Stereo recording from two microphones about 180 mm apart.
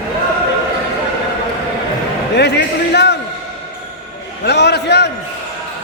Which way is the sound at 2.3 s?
70° left (ahead or behind).